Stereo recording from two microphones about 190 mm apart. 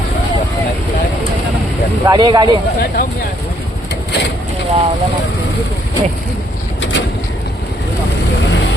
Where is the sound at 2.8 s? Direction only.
45° left (ahead or behind).